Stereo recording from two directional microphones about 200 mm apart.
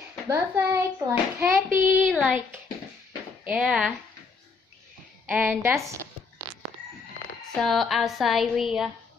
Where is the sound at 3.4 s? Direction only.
5° right (ahead or behind).